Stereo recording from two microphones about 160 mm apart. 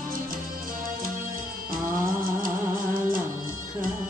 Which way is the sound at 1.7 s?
60° right (ahead or behind).